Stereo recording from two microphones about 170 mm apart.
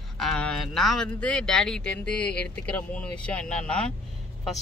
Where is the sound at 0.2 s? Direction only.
5° left (ahead or behind).